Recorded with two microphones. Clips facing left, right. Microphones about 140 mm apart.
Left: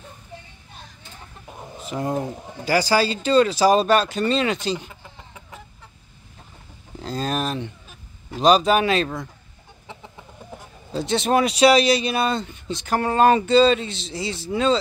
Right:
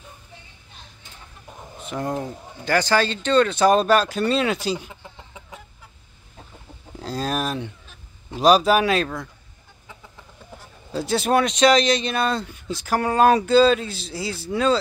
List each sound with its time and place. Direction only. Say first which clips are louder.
1.8 s speech: left 2 dB; centre (ahead or behind)
7.0 s speech: even; 5° right (ahead or behind)
9.8 s chicken: left 4 dB; 20° left (ahead or behind)
10.9 s speech: even; centre (ahead or behind)